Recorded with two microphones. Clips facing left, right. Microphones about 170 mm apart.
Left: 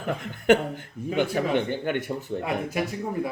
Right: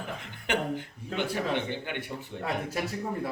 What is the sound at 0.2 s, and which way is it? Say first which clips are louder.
A man's voice: left 11 dB; 45° left (ahead or behind).